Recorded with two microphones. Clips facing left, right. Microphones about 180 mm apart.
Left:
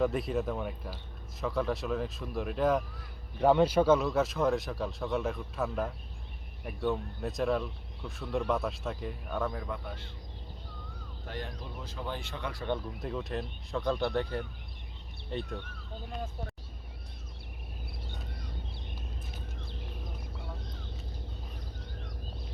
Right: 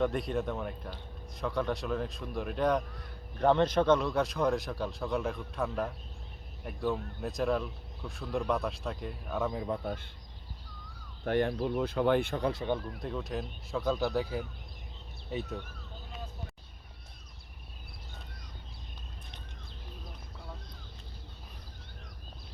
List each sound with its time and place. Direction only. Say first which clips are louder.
0.0 s speech: left 1 dB; centre (ahead or behind)
9.6 s a man's voice: right 5 dB; 35° right (ahead or behind)
11.3 s speech: right 12 dB; 60° right (ahead or behind)
12.4 s speech: right 7 dB; 25° right (ahead or behind)
12.8 s speech: even; centre (ahead or behind)